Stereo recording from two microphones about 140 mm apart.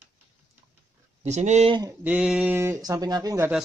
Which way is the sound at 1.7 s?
25° right (ahead or behind).